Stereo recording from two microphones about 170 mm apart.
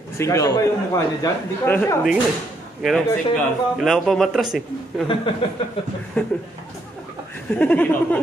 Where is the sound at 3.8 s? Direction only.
Centre (ahead or behind).